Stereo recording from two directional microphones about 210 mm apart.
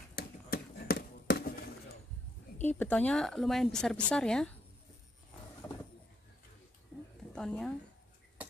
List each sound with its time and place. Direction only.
0.2 s a sound: 45° left (ahead or behind)
2.6 s speech: 10° left (ahead or behind)
5.6 s bird: 10° left (ahead or behind)
7.3 s speech: 5° left (ahead or behind)